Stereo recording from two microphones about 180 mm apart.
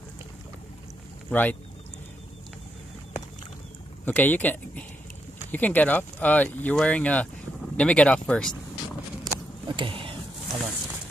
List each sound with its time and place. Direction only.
1.3 s speech: 10° left (ahead or behind)
4.0 s speech: 10° left (ahead or behind)
9.2 s vehicle: 25° right (ahead or behind)